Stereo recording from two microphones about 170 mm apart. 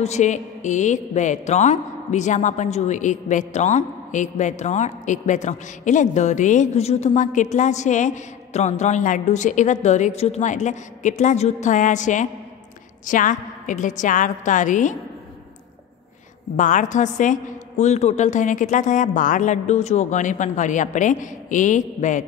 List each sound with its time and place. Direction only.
0.0 s a woman's voice: 45° left (ahead or behind)
16.5 s a woman's voice: 45° left (ahead or behind)